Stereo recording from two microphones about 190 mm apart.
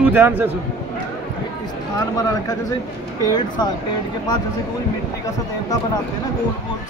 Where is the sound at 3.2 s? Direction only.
20° left (ahead or behind).